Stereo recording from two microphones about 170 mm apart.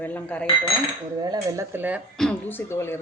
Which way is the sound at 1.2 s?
20° right (ahead or behind).